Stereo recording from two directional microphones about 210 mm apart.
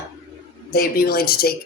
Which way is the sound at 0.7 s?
45° left (ahead or behind).